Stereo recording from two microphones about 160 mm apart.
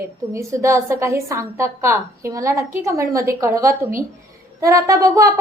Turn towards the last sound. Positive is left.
turn(degrees=-20)  # may be behind; listen again after turning